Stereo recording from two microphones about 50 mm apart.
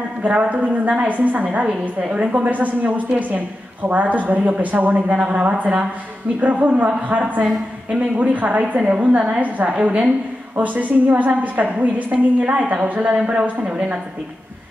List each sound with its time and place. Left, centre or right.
0.2 s a woman's voice: right
13.2 s speech: centre